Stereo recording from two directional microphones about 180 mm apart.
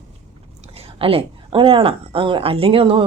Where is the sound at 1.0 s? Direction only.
30° right (ahead or behind).